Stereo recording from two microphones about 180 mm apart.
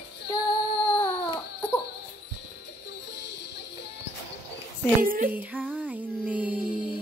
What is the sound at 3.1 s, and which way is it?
Music, 70° left (ahead or behind).